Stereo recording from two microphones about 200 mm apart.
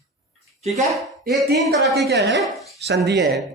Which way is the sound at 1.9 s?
55° right (ahead or behind).